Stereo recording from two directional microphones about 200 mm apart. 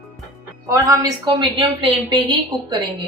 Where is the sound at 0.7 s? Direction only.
15° right (ahead or behind).